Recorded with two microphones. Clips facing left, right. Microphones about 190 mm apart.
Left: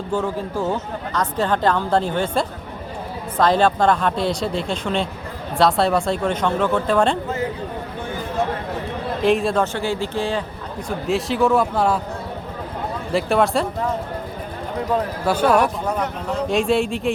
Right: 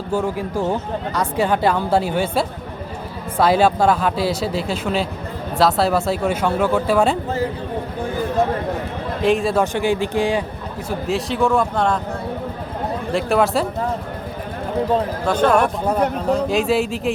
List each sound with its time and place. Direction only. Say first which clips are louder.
0.1 s speech: right 2 dB; 10° right (ahead or behind)
9.2 s speech: right 1 dB; centre (ahead or behind)
9.7 s speech: right 4 dB; 15° right (ahead or behind)
10.8 s speech: even; centre (ahead or behind)
13.1 s speech: even; centre (ahead or behind)
15.3 s speech: right 1 dB; 10° left (ahead or behind)